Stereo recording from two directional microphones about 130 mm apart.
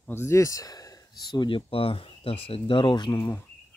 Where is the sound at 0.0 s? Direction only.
20° left (ahead or behind); by 3.3 s 35° left (ahead or behind).